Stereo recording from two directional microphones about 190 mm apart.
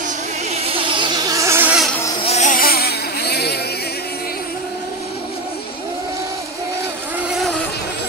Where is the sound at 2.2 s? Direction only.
35° left (ahead or behind); by 3.5 s 60° left (ahead or behind).